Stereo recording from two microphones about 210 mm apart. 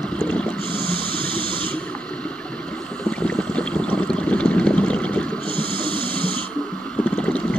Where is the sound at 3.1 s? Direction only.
5° left (ahead or behind).